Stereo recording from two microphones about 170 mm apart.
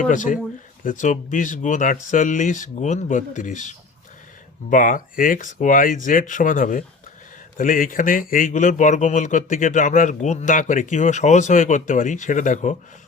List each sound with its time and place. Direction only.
0.0 s speech: 50° left (ahead or behind)